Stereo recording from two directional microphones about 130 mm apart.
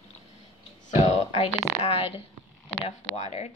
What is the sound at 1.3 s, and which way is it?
Speech, 50° left (ahead or behind).